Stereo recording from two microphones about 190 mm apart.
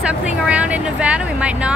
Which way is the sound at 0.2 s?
5° right (ahead or behind).